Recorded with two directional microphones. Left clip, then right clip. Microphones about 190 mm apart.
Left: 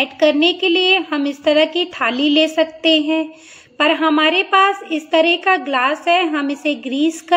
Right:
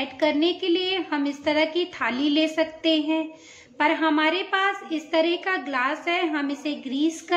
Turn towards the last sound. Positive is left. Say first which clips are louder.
# left 7 dB
turn(degrees=20)  # may be behind; listen again after turning